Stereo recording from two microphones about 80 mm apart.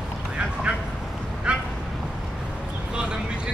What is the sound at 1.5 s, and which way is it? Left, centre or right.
Quack, centre.